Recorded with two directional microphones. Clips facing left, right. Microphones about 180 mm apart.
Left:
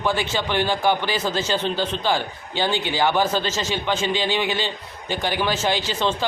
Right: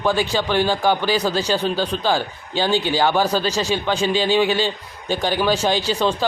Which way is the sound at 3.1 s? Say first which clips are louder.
Right 3 dB; 10° right (ahead or behind).